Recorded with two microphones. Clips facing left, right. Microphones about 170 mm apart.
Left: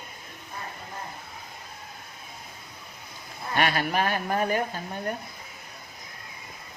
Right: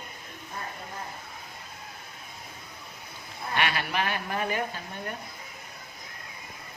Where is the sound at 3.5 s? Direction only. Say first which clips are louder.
Left 4 dB; 45° left (ahead or behind).